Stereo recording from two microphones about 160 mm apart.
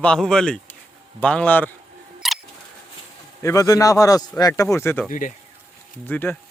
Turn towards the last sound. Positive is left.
turn(degrees=10)  # may be behind; listen again after turning